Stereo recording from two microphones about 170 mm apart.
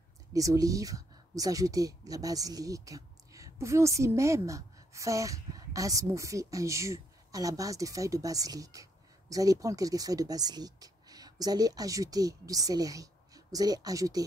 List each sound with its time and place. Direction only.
0.3 s speech: 20° right (ahead or behind)